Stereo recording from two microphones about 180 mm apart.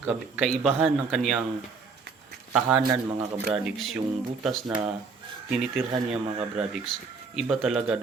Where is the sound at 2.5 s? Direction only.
5° right (ahead or behind).